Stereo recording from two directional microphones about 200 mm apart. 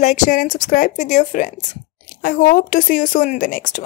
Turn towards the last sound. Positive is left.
turn(degrees=40)  # may be behind; listen again after turning